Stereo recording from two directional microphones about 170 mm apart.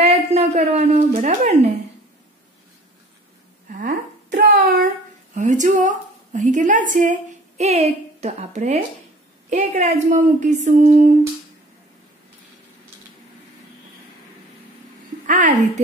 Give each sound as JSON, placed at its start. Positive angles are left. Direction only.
{"t": 0.0, "sound": "a woman's voice", "side_deg": -40}
{"t": 3.6, "sound": "a sound", "side_deg": -50}
{"t": 5.3, "sound": "a woman's voice", "side_deg": -45}
{"t": 15.2, "sound": "a woman's voice", "side_deg": -50}